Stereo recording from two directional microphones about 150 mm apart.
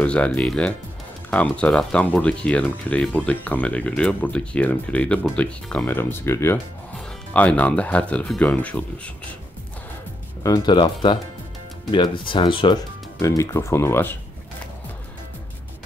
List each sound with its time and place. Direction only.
0.0 s speech: 10° left (ahead or behind)
10.4 s speech: 25° left (ahead or behind)
13.4 s speech: 20° left (ahead or behind)